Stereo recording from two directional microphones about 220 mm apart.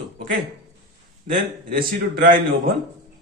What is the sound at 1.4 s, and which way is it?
Speech, 40° right (ahead or behind).